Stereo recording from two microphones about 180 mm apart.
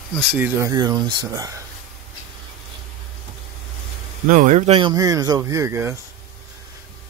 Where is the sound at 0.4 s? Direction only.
15° right (ahead or behind).